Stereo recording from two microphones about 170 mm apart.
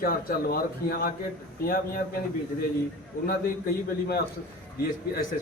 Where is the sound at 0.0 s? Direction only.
60° left (ahead or behind).